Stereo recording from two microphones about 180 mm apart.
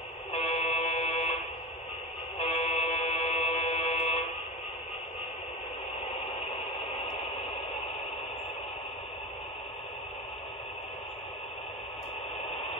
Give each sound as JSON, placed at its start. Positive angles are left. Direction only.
{"t": 0.3, "sound": "music", "side_deg": 35}
{"t": 2.3, "sound": "music", "side_deg": 35}